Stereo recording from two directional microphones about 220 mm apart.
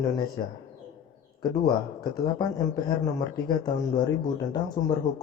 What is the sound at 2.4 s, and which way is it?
Speech, 20° left (ahead or behind).